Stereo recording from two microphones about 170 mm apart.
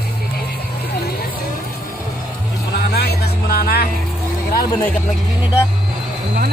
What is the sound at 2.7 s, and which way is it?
Vehicle, 70° left (ahead or behind).